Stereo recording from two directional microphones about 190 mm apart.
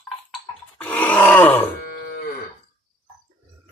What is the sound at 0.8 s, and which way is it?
Groan, 10° left (ahead or behind).